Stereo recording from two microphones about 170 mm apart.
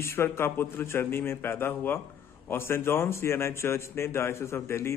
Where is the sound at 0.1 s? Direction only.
15° left (ahead or behind).